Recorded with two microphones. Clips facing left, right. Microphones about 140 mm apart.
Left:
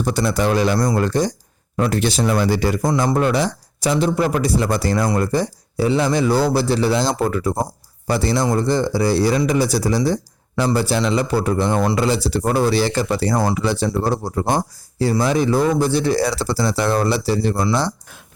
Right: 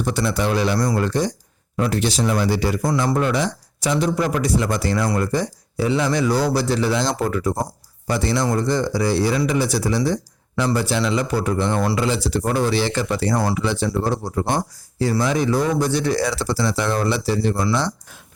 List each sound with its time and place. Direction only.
0.0 s speech: 40° left (ahead or behind)
3.2 s a man's voice: 35° left (ahead or behind)